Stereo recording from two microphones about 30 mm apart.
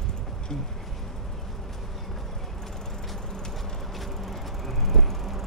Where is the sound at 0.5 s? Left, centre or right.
Centre.